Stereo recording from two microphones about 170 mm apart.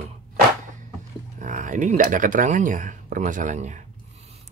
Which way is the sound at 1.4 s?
50° right (ahead or behind).